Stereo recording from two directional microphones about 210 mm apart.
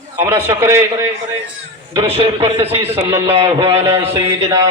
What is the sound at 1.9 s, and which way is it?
A man's voice, 25° right (ahead or behind).